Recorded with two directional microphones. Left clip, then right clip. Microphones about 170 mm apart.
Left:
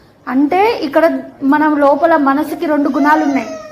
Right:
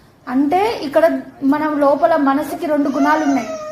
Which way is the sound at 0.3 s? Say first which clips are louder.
Left 4 dB; 10° left (ahead or behind).